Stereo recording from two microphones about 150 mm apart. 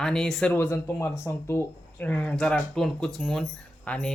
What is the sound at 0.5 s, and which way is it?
Speech, 15° left (ahead or behind).